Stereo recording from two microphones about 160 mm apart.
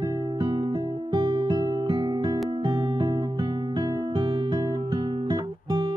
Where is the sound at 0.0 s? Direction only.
25° right (ahead or behind).